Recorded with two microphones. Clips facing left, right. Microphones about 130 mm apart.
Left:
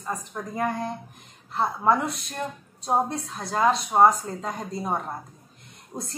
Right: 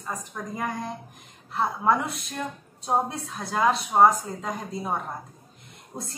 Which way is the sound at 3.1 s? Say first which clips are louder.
Left 2 dB; 5° right (ahead or behind).